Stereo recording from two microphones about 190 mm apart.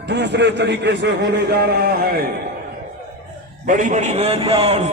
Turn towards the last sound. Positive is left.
turn(degrees=-35)  # may be behind; listen again after turning